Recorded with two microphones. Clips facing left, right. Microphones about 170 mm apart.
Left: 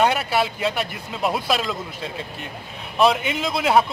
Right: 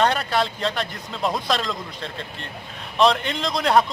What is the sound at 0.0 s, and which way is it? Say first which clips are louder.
A man's voice: left 1 dB; 10° left (ahead or behind).